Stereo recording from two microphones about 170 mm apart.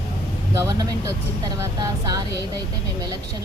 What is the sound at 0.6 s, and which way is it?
Speech, 20° right (ahead or behind).